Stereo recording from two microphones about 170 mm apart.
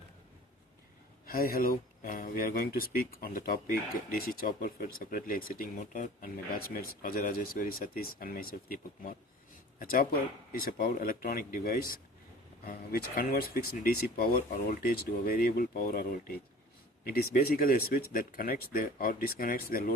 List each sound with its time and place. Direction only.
1.3 s speech: 60° left (ahead or behind)